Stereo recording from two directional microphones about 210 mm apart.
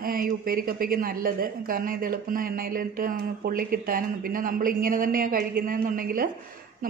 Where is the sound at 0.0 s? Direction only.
45° right (ahead or behind).